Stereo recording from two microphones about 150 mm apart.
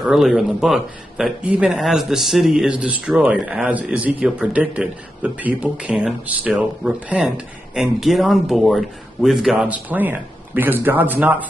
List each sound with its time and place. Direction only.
0.0 s a man's voice: 5° right (ahead or behind)